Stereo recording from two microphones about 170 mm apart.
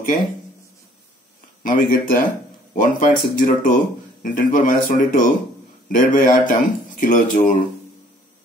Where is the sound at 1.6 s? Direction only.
50° left (ahead or behind).